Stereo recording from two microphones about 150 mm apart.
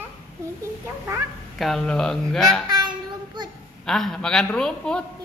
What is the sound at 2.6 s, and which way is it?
Child singing, 30° right (ahead or behind).